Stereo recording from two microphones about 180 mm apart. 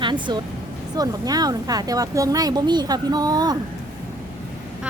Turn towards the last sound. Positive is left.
turn(degrees=-20)  # may be behind; listen again after turning